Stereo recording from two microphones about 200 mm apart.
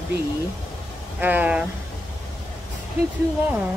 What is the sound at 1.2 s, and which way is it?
Speech, 10° right (ahead or behind).